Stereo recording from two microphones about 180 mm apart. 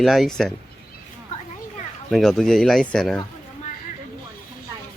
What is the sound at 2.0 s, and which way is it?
Speech, centre (ahead or behind).